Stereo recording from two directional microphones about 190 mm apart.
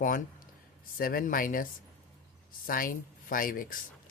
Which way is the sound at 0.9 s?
50° left (ahead or behind).